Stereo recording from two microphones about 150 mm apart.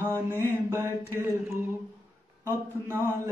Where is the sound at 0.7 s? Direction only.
15° right (ahead or behind).